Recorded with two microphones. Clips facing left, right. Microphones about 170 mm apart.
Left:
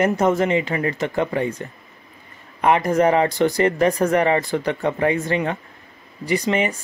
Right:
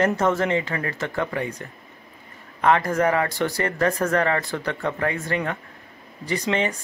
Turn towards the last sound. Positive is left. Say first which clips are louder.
# left 3 dB
turn(degrees=10)  # may be behind; listen again after turning